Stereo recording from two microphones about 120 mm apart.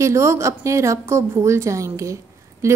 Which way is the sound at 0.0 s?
25° right (ahead or behind).